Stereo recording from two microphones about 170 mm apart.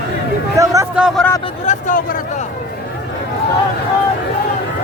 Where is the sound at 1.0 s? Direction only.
5° right (ahead or behind).